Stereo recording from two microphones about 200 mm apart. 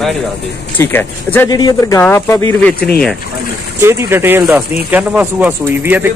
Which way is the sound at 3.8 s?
10° right (ahead or behind).